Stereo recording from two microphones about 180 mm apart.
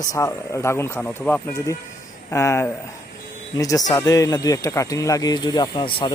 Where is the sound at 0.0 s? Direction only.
20° left (ahead or behind).